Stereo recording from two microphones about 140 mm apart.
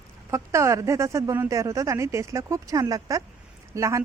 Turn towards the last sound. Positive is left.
turn(degrees=-20)  # may be behind; listen again after turning